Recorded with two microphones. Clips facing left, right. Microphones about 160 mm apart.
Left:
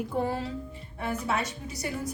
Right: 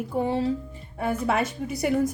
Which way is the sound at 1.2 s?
55° right (ahead or behind).